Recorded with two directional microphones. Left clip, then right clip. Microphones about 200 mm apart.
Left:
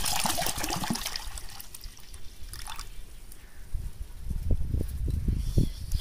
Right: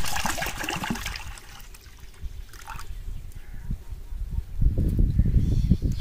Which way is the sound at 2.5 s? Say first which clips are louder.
Right 1 dB; 5° right (ahead or behind).